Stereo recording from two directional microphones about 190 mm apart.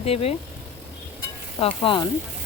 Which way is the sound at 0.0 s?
30° left (ahead or behind).